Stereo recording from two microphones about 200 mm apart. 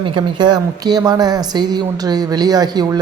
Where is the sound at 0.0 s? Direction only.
25° right (ahead or behind).